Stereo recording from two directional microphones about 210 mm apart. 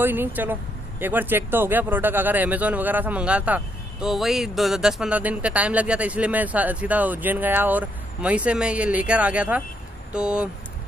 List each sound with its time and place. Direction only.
0.0 s speech: 10° right (ahead or behind)